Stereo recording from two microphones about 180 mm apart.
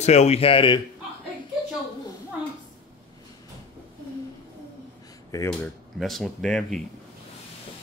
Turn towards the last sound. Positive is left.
turn(degrees=5)  # may be behind; listen again after turning